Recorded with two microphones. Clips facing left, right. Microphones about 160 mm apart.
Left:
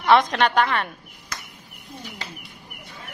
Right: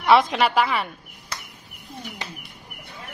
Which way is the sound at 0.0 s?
5° right (ahead or behind).